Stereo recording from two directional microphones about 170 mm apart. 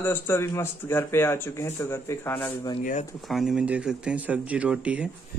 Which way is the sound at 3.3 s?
Centre (ahead or behind).